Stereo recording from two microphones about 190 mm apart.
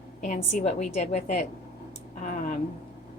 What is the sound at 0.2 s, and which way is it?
A woman's voice, 35° left (ahead or behind).